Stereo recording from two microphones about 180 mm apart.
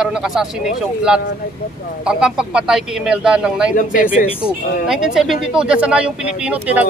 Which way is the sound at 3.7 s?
45° left (ahead or behind).